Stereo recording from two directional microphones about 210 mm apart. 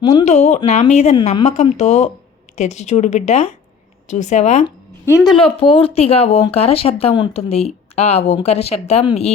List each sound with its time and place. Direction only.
0.0 s speech: 20° left (ahead or behind)
0.3 s speech: 30° left (ahead or behind)
5.1 s a woman's voice: centre (ahead or behind)
5.4 s speech: 25° left (ahead or behind)